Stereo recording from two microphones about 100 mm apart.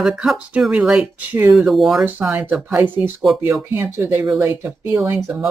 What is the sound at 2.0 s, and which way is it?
Speech, 20° right (ahead or behind).